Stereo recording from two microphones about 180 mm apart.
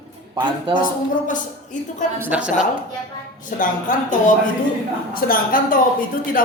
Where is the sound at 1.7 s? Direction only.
45° left (ahead or behind).